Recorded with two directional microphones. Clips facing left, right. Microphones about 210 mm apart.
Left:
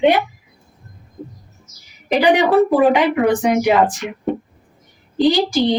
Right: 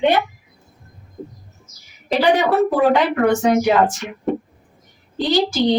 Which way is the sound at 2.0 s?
15° left (ahead or behind).